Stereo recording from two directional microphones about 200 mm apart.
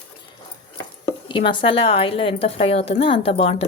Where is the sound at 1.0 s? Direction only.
25° left (ahead or behind).